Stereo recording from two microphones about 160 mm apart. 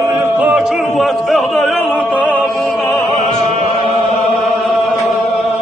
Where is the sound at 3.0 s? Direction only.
35° right (ahead or behind).